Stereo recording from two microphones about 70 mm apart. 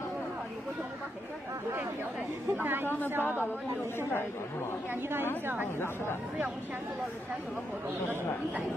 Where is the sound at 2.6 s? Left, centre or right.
Right.